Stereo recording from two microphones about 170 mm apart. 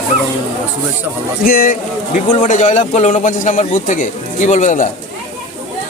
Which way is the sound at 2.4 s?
45° left (ahead or behind).